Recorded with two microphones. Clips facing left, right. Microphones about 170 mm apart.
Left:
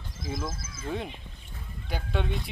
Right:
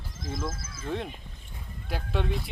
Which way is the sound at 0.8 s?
Centre (ahead or behind).